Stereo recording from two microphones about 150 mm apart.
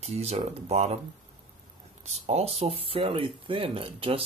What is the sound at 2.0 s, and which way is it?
Speech, 45° right (ahead or behind).